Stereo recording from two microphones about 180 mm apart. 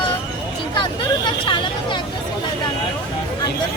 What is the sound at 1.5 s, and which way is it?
Speech, 25° left (ahead or behind).